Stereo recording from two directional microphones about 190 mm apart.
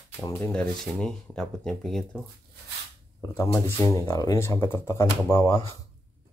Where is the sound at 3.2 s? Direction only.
10° left (ahead or behind).